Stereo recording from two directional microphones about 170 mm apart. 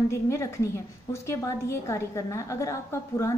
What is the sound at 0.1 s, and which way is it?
A woman's voice, 15° left (ahead or behind).